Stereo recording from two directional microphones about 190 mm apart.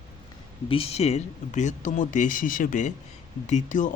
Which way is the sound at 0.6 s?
30° left (ahead or behind).